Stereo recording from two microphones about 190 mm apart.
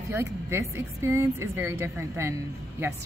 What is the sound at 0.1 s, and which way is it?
Speech, 15° right (ahead or behind).